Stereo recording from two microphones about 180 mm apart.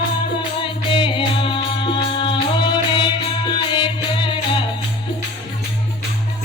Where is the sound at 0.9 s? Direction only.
30° left (ahead or behind).